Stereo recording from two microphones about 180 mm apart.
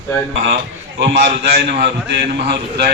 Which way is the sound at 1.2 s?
70° right (ahead or behind).